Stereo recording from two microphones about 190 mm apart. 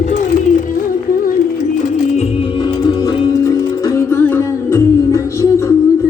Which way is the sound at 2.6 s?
20° left (ahead or behind).